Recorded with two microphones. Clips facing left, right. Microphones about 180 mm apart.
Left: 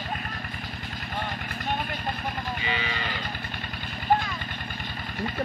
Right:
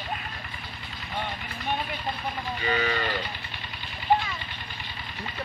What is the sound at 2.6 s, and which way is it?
Livestock, 45° right (ahead or behind).